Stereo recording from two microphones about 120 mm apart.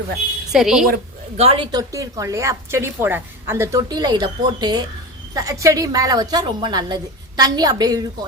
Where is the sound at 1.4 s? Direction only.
55° right (ahead or behind).